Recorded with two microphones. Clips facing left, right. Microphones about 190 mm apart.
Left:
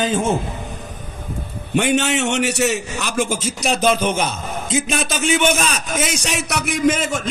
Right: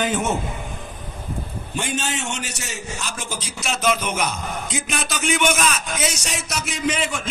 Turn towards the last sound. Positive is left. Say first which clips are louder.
# left 6 dB
turn(degrees=45)  # may be behind; listen again after turning